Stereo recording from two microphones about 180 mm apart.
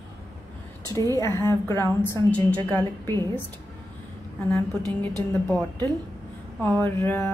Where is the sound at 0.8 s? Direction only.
20° right (ahead or behind).